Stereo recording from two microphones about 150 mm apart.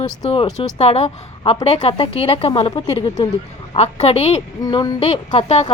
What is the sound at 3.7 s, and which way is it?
Speech, 40° left (ahead or behind).